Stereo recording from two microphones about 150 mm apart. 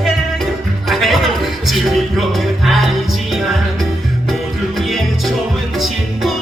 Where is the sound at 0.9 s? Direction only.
Centre (ahead or behind).